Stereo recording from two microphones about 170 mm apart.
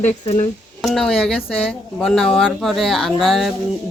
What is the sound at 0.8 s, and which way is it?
A woman's voice, centre (ahead or behind).